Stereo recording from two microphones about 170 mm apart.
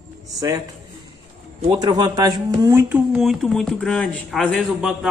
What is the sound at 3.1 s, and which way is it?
A man's voice, centre (ahead or behind).